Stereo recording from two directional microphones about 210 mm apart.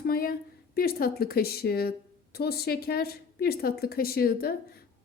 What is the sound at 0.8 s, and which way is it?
A woman's voice, 45° left (ahead or behind).